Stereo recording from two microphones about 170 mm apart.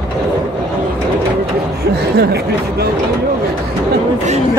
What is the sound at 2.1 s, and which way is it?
Speech, 70° right (ahead or behind).